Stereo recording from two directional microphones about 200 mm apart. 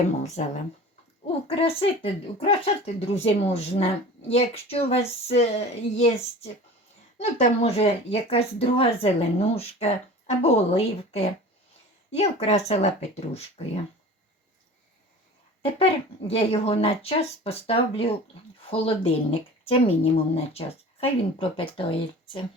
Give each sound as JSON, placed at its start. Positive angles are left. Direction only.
{"t": 0.2, "sound": "speech", "side_deg": 35}
{"t": 15.6, "sound": "speech", "side_deg": 30}